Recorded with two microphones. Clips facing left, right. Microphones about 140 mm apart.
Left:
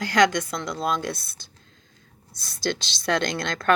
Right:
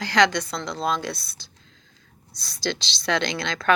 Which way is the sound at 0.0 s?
50° left (ahead or behind).